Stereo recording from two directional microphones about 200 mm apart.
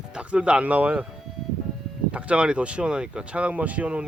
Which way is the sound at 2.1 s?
5° right (ahead or behind).